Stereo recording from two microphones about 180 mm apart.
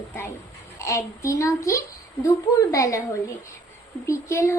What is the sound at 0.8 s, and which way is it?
Speech, 15° left (ahead or behind).